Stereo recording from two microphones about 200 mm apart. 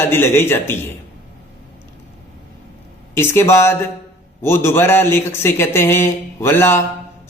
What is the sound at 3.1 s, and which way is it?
A man's voice, 10° left (ahead or behind).